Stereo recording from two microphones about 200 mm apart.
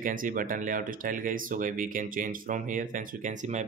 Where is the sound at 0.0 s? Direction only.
45° right (ahead or behind).